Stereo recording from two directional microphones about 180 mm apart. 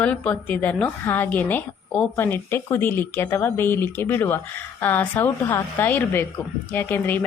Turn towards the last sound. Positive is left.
turn(degrees=10)  # may be behind; listen again after turning